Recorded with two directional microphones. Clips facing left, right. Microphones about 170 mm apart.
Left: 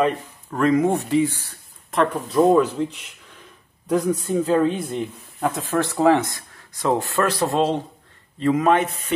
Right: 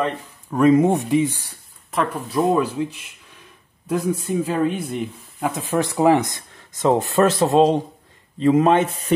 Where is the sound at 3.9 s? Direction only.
10° right (ahead or behind); by 8.9 s 25° right (ahead or behind).